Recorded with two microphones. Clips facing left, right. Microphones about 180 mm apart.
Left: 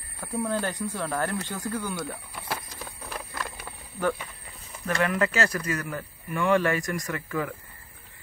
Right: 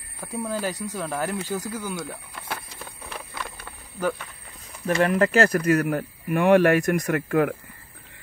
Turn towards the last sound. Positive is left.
turn(degrees=-60)  # may be behind; listen again after turning